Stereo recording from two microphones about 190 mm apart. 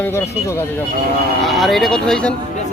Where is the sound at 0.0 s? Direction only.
10° left (ahead or behind).